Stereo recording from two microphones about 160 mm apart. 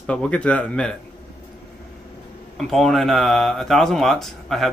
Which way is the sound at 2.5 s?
Centre (ahead or behind).